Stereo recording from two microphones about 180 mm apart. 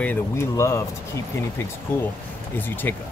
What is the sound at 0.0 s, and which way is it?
Speech, 15° left (ahead or behind).